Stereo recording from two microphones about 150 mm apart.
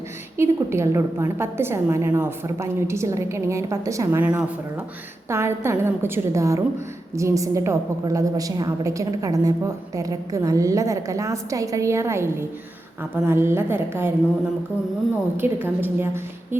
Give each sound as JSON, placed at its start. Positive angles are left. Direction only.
{"t": 0.3, "sound": "a woman's voice", "side_deg": -20}
{"t": 15.4, "sound": "a woman's voice", "side_deg": -15}